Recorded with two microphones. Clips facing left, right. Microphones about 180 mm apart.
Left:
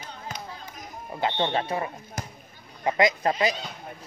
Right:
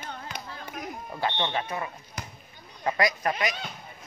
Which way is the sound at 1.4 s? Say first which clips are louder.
Left 4 dB; 30° left (ahead or behind).